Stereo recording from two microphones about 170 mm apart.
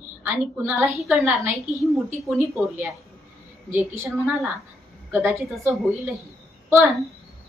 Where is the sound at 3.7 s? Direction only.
15° right (ahead or behind).